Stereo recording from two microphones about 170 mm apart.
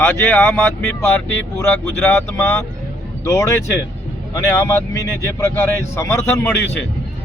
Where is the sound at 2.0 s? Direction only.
10° left (ahead or behind).